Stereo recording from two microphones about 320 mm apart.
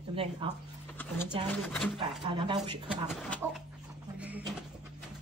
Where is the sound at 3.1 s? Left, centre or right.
Centre.